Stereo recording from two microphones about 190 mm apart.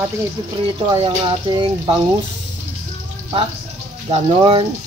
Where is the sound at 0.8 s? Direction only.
25° right (ahead or behind).